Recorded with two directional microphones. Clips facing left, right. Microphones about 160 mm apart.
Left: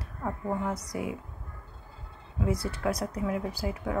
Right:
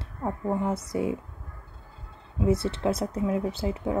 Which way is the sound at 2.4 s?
25° right (ahead or behind).